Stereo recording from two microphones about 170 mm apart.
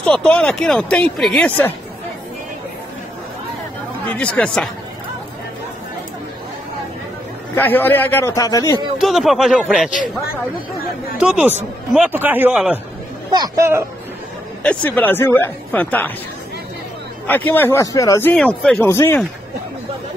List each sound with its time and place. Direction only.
0.0 s speech: 5° left (ahead or behind)
4.1 s speech: 10° left (ahead or behind)
7.5 s speech: 10° left (ahead or behind)
8.9 s speech: centre (ahead or behind)
11.1 s a man's voice: 10° right (ahead or behind)
13.3 s speech: 25° right (ahead or behind)
14.6 s speech: 10° left (ahead or behind)
17.3 s speech: 10° left (ahead or behind)
18.3 s speech: 5° left (ahead or behind)